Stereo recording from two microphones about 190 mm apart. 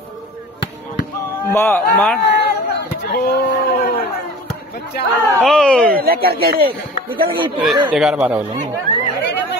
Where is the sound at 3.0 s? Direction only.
55° left (ahead or behind).